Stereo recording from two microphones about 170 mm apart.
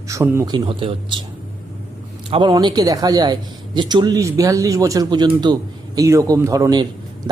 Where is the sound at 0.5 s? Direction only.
30° right (ahead or behind).